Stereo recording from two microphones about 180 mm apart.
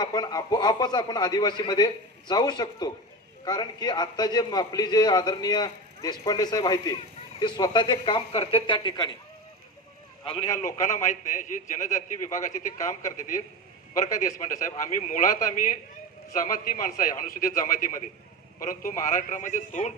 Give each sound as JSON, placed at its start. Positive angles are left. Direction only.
{"t": 0.0, "sound": "a man's voice", "side_deg": 25}
{"t": 10.8, "sound": "a man's voice", "side_deg": 45}